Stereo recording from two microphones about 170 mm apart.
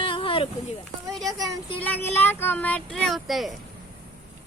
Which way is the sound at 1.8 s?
10° left (ahead or behind).